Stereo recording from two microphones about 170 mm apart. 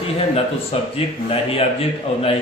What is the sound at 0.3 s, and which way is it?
Speech, 35° left (ahead or behind).